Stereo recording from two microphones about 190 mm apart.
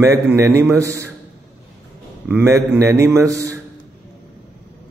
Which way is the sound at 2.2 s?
10° right (ahead or behind).